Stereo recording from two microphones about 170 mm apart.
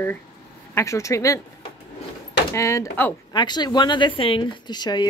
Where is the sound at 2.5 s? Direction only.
15° left (ahead or behind).